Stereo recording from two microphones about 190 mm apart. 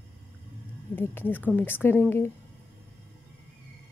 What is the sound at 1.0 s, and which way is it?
Speech, 10° left (ahead or behind).